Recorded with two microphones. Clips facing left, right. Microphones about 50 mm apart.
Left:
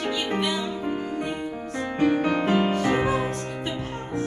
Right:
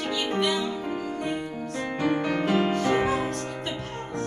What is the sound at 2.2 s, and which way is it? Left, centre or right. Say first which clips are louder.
Music: left 2 dB; centre.